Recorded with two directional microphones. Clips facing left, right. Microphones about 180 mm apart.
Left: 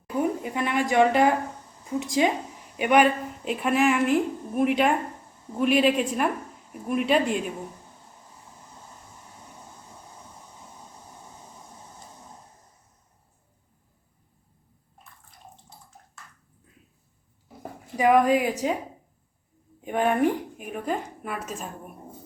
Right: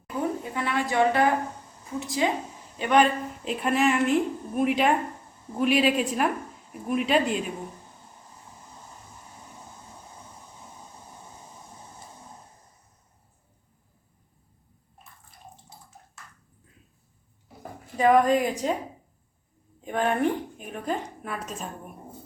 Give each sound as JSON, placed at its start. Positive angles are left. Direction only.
{"t": 0.2, "sound": "a woman's voice", "side_deg": 15}
{"t": 17.9, "sound": "speech", "side_deg": 10}
{"t": 19.8, "sound": "a woman's voice", "side_deg": 15}